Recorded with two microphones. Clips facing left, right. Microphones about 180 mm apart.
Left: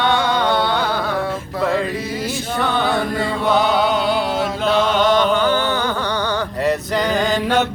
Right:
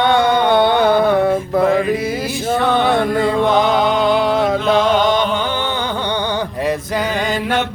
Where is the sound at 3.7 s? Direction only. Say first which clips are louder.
Right 3 dB; 50° right (ahead or behind).